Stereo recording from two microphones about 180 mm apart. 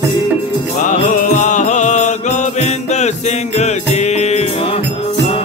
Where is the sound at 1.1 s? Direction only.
45° left (ahead or behind).